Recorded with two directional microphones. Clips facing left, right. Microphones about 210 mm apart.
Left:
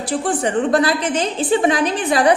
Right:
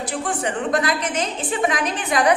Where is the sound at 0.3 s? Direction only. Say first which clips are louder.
Left 6 dB; 30° left (ahead or behind).